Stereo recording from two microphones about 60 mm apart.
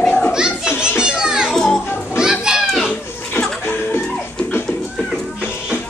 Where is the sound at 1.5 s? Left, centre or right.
Centre.